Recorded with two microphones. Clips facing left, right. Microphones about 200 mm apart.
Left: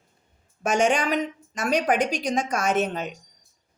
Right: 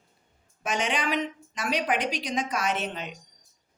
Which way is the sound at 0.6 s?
45° left (ahead or behind).